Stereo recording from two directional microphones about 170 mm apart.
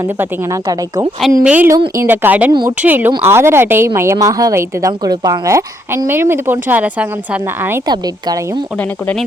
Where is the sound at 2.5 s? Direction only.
25° right (ahead or behind).